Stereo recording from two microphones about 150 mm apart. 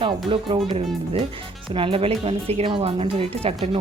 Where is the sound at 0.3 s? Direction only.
35° right (ahead or behind).